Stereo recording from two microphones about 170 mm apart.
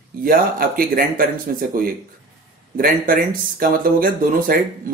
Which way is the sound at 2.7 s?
60° right (ahead or behind).